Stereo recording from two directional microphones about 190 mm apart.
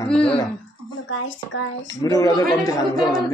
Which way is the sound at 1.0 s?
90° left.